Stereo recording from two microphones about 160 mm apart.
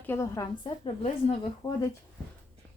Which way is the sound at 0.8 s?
35° left (ahead or behind).